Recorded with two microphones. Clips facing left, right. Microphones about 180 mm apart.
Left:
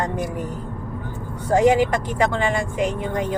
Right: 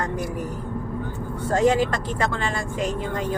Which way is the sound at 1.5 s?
15° left (ahead or behind).